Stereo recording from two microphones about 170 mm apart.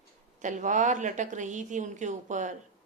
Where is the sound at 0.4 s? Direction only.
45° right (ahead or behind).